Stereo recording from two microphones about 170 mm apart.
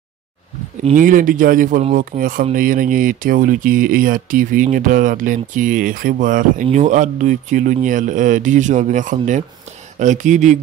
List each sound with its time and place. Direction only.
0.9 s speech: 50° right (ahead or behind)